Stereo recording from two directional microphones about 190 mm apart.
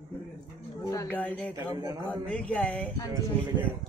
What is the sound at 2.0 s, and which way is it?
Speech, 5° left (ahead or behind).